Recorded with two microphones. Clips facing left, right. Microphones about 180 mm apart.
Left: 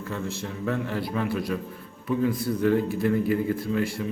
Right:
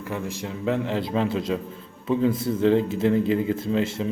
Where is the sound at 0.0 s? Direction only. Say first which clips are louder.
Right 1 dB; 15° right (ahead or behind).